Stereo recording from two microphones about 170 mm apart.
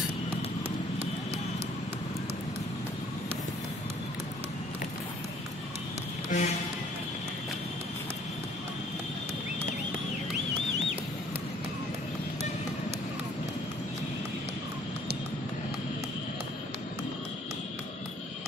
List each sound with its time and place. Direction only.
6.3 s music: 50° left (ahead or behind)